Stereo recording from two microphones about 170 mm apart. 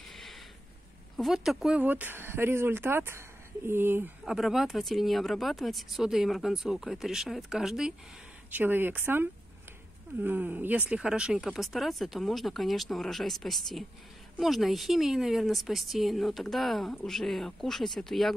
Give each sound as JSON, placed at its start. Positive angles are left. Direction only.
{"t": 0.1, "sound": "a sound", "side_deg": 0}
{"t": 1.1, "sound": "speech", "side_deg": 0}
{"t": 4.2, "sound": "speech", "side_deg": 0}